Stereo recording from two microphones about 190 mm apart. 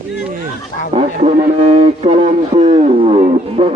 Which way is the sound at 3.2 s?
35° right (ahead or behind).